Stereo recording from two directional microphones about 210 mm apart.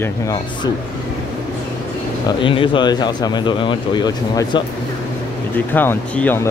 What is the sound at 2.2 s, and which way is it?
Speech, 25° left (ahead or behind).